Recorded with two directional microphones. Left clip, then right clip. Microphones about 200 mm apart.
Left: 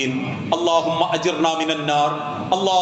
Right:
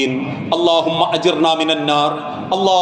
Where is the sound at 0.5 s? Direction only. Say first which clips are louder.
Right 4 dB; 35° right (ahead or behind).